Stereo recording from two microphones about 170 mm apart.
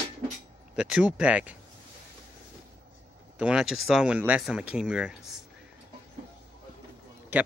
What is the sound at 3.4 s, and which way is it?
Speech, 5° right (ahead or behind).